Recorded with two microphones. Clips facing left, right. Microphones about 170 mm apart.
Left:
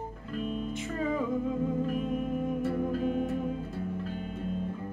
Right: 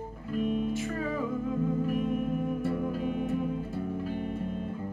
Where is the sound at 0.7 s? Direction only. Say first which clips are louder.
Even; 20° left (ahead or behind).